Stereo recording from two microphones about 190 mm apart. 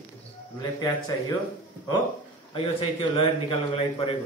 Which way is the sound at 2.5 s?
30° left (ahead or behind).